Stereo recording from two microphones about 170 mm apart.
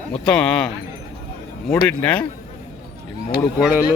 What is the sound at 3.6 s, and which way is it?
Speech, 10° right (ahead or behind).